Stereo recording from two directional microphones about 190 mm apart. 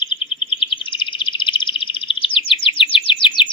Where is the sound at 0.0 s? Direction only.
25° left (ahead or behind).